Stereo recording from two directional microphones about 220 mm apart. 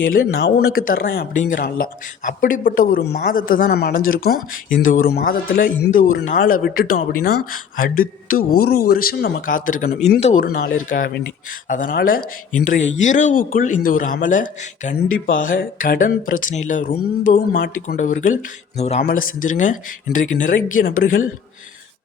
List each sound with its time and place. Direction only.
0.0 s speech: 45° left (ahead or behind)
10.2 s speech: 30° left (ahead or behind)
10.4 s speech: 45° left (ahead or behind)